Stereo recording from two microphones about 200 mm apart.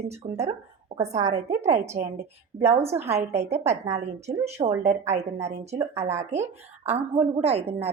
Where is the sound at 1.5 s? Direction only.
35° right (ahead or behind).